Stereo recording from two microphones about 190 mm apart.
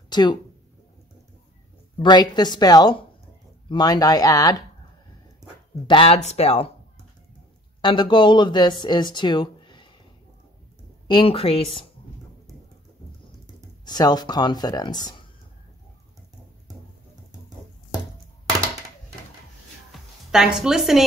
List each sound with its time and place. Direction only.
0.1 s speech: 25° left (ahead or behind)
2.0 s speech: 25° left (ahead or behind)
5.9 s speech: 30° left (ahead or behind)
7.8 s speech: 25° left (ahead or behind)
11.1 s speech: 30° left (ahead or behind)
13.8 s speech: 20° left (ahead or behind)
19.9 s music: centre (ahead or behind)